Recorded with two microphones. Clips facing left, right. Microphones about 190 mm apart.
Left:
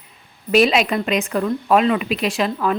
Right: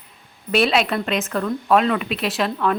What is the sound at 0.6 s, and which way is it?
A woman's voice, 5° left (ahead or behind).